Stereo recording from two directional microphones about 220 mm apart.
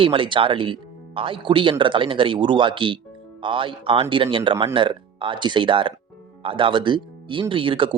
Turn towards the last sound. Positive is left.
turn(degrees=-25)  # may be behind; listen again after turning